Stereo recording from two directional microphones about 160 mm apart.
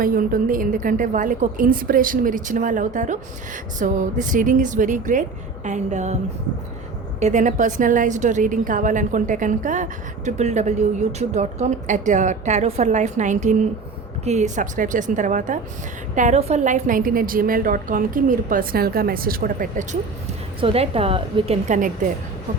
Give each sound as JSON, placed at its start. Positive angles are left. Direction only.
{"t": 0.0, "sound": "a woman's voice", "side_deg": -65}
{"t": 7.2, "sound": "a woman's voice", "side_deg": -50}
{"t": 20.6, "sound": "a woman's voice", "side_deg": -35}
{"t": 21.8, "sound": "a woman's voice", "side_deg": -55}